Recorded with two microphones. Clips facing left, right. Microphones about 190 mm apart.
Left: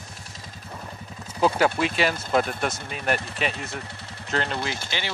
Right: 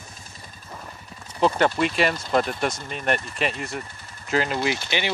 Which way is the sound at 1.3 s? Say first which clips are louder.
Right 1 dB; 5° left (ahead or behind).